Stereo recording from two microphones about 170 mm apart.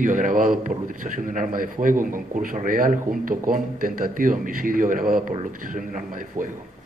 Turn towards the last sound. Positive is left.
turn(degrees=-50)  # may be behind; listen again after turning